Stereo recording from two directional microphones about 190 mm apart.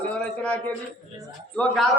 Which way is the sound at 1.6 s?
Centre (ahead or behind).